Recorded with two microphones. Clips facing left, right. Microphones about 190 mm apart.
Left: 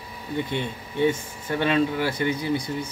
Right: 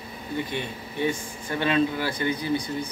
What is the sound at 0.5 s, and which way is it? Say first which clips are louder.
A man's voice: left 3 dB; 20° left (ahead or behind).